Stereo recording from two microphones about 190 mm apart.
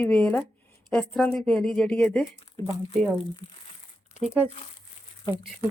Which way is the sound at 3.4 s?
25° left (ahead or behind).